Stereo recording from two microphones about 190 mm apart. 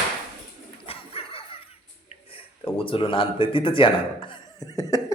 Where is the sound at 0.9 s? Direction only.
30° left (ahead or behind).